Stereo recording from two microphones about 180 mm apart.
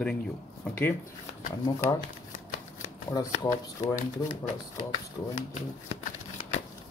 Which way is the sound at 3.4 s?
20° left (ahead or behind).